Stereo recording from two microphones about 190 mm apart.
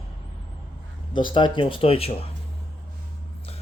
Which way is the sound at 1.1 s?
25° left (ahead or behind).